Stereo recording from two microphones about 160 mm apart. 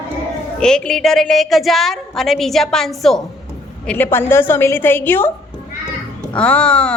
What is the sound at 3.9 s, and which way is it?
A woman's voice, 15° left (ahead or behind).